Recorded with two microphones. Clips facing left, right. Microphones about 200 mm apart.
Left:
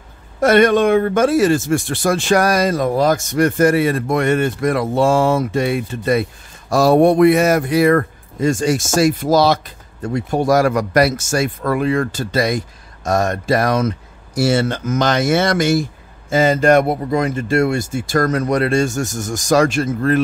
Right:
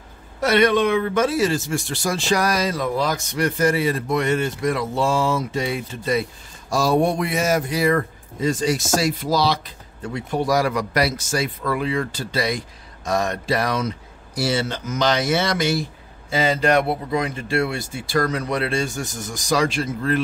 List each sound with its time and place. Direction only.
0.4 s a man's voice: 50° left (ahead or behind)